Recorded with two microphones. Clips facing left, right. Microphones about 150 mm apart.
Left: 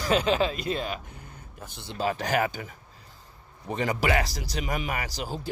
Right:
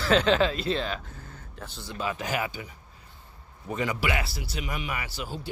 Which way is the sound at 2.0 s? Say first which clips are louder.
Left 4 dB; 40° left (ahead or behind).